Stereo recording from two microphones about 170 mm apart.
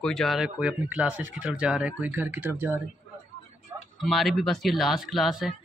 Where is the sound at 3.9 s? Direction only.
Centre (ahead or behind).